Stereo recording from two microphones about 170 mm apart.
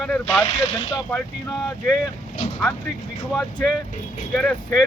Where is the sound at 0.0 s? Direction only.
Centre (ahead or behind).